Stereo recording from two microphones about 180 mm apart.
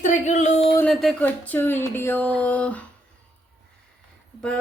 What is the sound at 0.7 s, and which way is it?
Speech, 5° left (ahead or behind).